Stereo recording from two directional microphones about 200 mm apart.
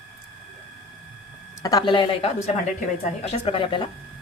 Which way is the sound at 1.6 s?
20° left (ahead or behind).